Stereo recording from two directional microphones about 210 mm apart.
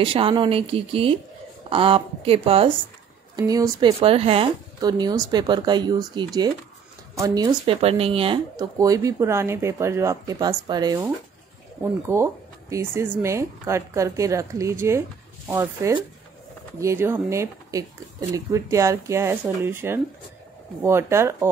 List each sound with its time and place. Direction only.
0.0 s speech: 25° right (ahead or behind)